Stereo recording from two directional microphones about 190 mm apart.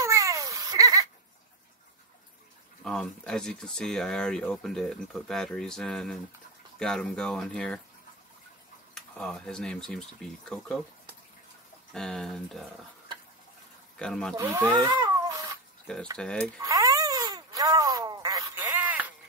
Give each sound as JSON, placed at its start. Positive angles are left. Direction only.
{"t": 0.0, "sound": "a sound", "side_deg": -15}
{"t": 2.8, "sound": "speech", "side_deg": 5}
{"t": 8.9, "sound": "speech", "side_deg": 5}
{"t": 11.9, "sound": "speech", "side_deg": 5}
{"t": 13.9, "sound": "speech", "side_deg": 5}
{"t": 14.3, "sound": "speech", "side_deg": -15}
{"t": 15.2, "sound": "bathtub", "side_deg": -20}
{"t": 16.2, "sound": "speech", "side_deg": 5}
{"t": 16.6, "sound": "a sound", "side_deg": -15}